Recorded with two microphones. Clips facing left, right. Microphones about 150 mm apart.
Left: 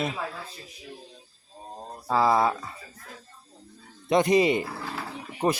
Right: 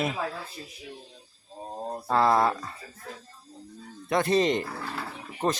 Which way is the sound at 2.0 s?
5° left (ahead or behind).